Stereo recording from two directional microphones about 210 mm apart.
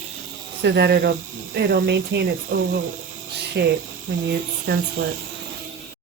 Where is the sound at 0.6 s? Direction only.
55° right (ahead or behind).